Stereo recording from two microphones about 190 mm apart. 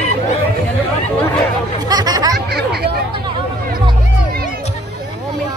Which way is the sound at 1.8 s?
20° right (ahead or behind).